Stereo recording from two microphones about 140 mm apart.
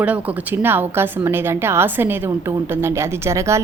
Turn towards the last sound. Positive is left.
turn(degrees=-20)  # may be behind; listen again after turning